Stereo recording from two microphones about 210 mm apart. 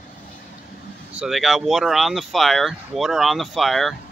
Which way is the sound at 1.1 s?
Centre (ahead or behind).